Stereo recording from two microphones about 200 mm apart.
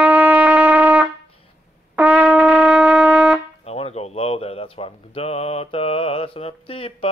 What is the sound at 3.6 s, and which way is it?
Speech, 30° left (ahead or behind).